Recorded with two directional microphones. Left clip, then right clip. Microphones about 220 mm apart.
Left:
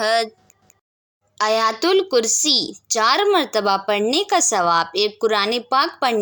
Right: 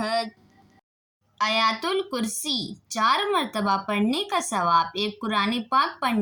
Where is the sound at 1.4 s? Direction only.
45° left (ahead or behind).